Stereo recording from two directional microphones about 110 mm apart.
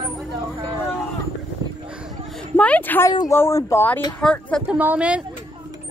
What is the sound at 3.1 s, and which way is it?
Speech, 30° left (ahead or behind).